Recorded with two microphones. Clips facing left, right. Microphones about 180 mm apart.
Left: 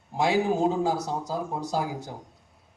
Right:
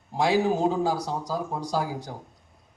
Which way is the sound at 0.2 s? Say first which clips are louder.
Right 1 dB; 25° left (ahead or behind).